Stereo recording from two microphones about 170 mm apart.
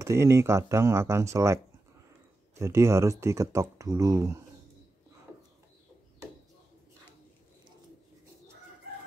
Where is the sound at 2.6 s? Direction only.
15° right (ahead or behind).